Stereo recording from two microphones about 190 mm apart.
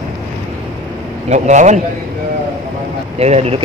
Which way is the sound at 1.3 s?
40° right (ahead or behind).